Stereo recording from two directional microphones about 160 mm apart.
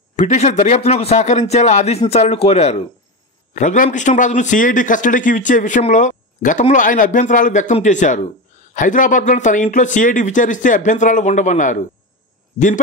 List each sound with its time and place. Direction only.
0.1 s speech: 45° left (ahead or behind)